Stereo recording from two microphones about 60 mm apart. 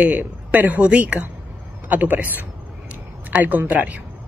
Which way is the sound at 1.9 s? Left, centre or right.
Right.